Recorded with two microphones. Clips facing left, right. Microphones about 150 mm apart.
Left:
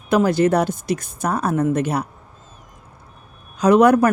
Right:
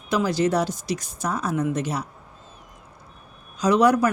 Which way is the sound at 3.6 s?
55° left (ahead or behind).